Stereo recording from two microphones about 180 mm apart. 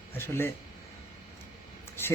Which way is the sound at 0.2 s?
15° left (ahead or behind).